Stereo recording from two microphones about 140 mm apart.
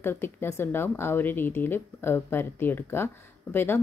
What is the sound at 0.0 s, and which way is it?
Speech, 15° left (ahead or behind).